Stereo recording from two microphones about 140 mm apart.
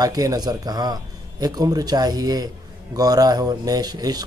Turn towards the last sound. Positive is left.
turn(degrees=-25)  # may be behind; listen again after turning